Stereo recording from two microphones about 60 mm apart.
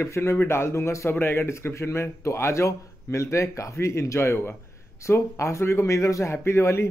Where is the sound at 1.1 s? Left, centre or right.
Left.